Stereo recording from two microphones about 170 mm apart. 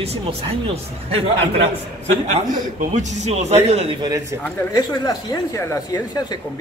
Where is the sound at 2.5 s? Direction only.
45° right (ahead or behind); by 4.2 s 25° right (ahead or behind).